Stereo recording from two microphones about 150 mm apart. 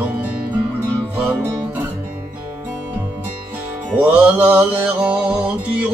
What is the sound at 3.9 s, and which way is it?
Mantra, 10° right (ahead or behind).